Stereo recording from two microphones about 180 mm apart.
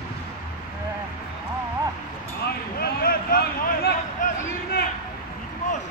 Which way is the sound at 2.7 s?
55° left (ahead or behind).